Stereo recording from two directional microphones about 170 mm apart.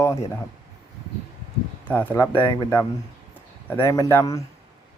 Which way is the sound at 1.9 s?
10° left (ahead or behind).